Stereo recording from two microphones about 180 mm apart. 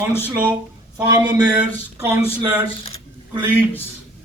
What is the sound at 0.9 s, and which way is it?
Speech, 20° right (ahead or behind).